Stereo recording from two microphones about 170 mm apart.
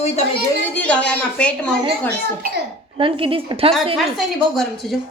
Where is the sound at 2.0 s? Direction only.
75° right (ahead or behind).